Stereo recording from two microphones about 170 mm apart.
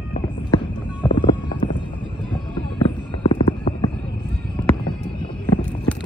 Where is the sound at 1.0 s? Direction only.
25° left (ahead or behind).